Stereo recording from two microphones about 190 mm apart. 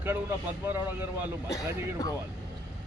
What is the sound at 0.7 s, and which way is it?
Speech, 10° right (ahead or behind).